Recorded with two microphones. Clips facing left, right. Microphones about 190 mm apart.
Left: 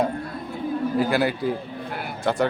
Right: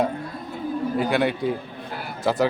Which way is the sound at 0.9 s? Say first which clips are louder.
Even; centre (ahead or behind).